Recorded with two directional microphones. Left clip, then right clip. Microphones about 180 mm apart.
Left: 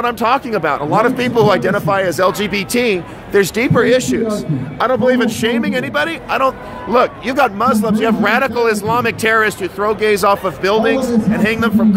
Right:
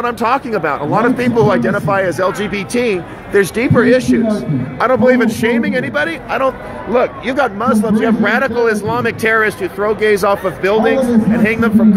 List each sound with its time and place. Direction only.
0.0 s speech: 15° left (ahead or behind)
6.9 s speech: 20° left (ahead or behind)